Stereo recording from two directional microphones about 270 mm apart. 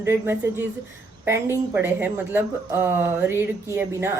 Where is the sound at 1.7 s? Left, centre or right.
Centre.